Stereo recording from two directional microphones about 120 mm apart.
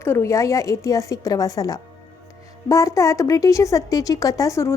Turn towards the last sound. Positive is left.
turn(degrees=25)  # may be behind; listen again after turning